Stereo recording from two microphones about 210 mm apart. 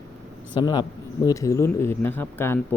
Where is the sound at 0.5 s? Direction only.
20° left (ahead or behind).